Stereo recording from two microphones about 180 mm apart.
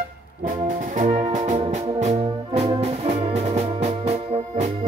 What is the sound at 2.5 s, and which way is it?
Music, 35° right (ahead or behind).